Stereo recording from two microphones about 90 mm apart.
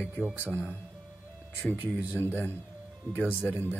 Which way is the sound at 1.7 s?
20° right (ahead or behind).